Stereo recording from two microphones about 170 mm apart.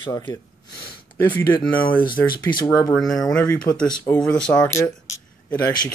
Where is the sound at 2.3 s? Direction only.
25° left (ahead or behind).